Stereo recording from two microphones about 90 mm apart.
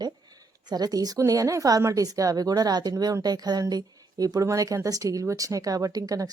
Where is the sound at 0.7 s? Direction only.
45° right (ahead or behind).